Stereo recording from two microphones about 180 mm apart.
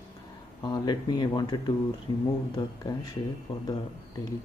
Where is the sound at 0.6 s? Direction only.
25° left (ahead or behind).